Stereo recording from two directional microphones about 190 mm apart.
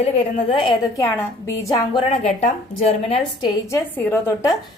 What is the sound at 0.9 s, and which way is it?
Speech, 15° left (ahead or behind).